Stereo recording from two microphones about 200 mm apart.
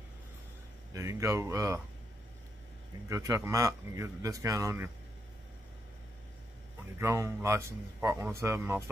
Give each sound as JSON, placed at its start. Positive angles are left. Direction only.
{"t": 0.9, "sound": "a man's voice", "side_deg": -15}
{"t": 3.1, "sound": "a man's voice", "side_deg": -15}
{"t": 7.0, "sound": "a man's voice", "side_deg": -15}